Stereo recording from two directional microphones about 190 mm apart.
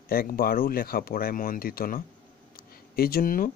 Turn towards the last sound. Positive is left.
turn(degrees=50)  # may be behind; listen again after turning